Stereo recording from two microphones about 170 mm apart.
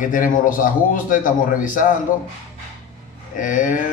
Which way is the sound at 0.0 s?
50° left (ahead or behind).